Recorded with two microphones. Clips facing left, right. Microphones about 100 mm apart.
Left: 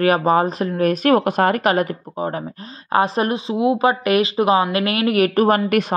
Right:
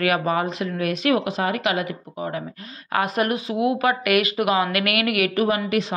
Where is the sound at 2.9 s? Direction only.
30° left (ahead or behind).